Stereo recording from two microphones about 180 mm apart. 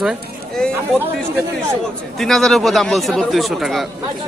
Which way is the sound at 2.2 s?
Centre (ahead or behind).